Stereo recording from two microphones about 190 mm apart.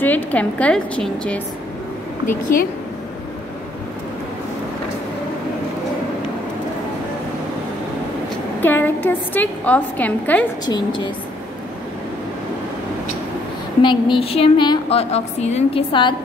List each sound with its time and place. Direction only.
0.0 s a woman's voice: 10° left (ahead or behind)
8.5 s a woman's voice: 10° left (ahead or behind)
10.6 s a woman's voice: 20° left (ahead or behind)
13.8 s a woman's voice: 25° left (ahead or behind)